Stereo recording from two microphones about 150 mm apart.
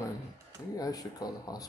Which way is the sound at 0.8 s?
25° left (ahead or behind).